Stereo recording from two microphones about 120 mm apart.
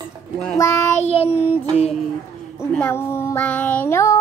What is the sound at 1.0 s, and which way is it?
Child singing, 55° left (ahead or behind).